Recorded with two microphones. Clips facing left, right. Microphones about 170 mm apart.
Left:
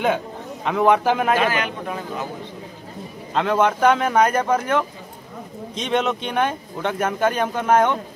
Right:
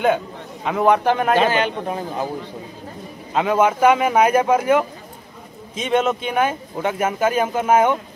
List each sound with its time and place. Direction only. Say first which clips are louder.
0.7 s speech: right 1 dB; centre (ahead or behind)
1.4 s speech: right 3 dB; 30° right (ahead or behind)
3.3 s speech: right 2 dB; 5° right (ahead or behind)